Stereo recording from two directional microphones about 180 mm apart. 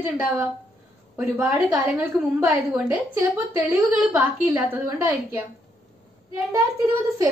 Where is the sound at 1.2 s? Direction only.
5° right (ahead or behind).